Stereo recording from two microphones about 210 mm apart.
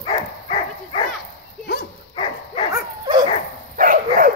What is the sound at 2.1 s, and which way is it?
Dog, 25° left (ahead or behind).